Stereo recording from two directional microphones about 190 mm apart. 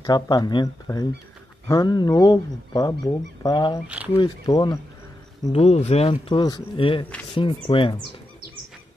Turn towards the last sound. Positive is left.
turn(degrees=25)  # may be behind; listen again after turning